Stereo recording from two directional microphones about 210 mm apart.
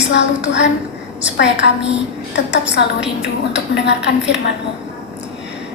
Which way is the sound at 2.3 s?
55° left (ahead or behind).